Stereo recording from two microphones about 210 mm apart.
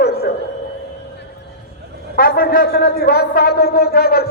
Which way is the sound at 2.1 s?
45° left (ahead or behind).